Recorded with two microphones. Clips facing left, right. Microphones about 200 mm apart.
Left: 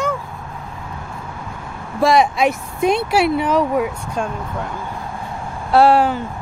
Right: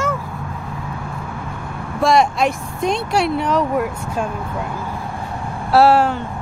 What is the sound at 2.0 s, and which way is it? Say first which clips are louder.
Speech: left 1 dB; centre (ahead or behind).